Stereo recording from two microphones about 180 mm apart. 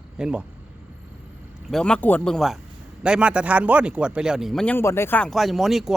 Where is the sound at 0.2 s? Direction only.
5° right (ahead or behind).